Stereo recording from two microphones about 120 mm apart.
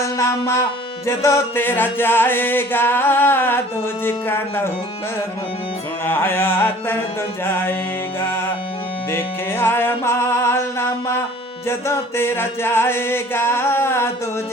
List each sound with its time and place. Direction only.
0.2 s music: 25° left (ahead or behind)
6.1 s music: 20° left (ahead or behind)